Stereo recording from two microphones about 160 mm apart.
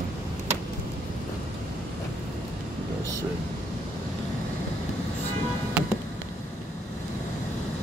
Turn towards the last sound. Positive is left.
turn(degrees=-5)  # may be behind; listen again after turning